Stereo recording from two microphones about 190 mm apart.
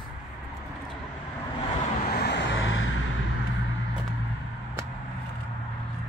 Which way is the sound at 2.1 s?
60° left (ahead or behind).